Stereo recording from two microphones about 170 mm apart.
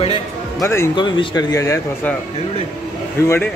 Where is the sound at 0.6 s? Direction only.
15° left (ahead or behind).